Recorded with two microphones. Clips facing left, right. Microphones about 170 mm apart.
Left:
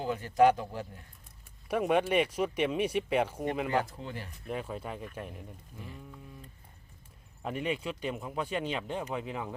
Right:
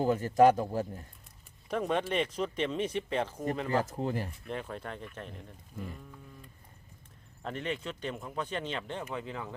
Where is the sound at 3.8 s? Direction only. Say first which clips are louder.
Right 8 dB; 40° right (ahead or behind).